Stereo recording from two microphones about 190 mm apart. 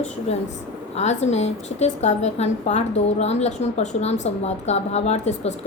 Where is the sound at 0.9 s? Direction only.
35° left (ahead or behind).